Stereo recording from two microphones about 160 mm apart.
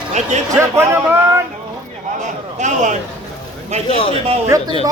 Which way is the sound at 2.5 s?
50° right (ahead or behind).